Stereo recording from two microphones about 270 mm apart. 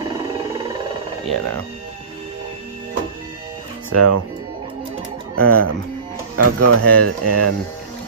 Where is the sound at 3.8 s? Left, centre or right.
Right.